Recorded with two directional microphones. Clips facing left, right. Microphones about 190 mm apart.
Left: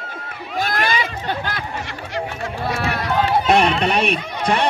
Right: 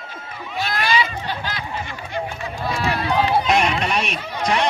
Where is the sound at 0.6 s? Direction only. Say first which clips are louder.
Even; 50° left (ahead or behind).